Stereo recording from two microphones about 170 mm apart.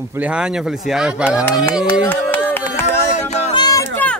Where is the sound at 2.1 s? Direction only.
10° left (ahead or behind).